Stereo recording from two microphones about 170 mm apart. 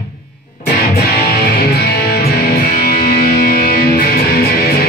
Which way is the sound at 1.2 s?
65° left (ahead or behind).